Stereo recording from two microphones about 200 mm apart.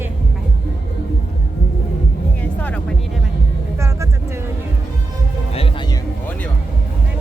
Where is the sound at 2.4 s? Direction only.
10° left (ahead or behind).